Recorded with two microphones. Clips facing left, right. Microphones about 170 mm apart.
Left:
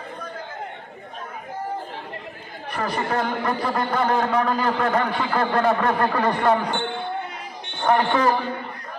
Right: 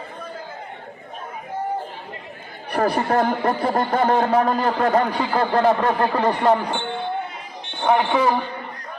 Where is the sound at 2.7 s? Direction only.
60° right (ahead or behind).